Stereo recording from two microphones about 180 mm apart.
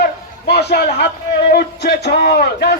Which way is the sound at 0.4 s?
65° left (ahead or behind).